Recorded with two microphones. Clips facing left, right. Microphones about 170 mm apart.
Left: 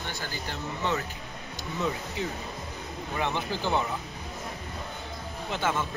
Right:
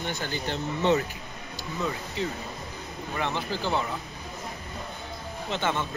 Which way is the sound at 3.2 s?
15° left (ahead or behind).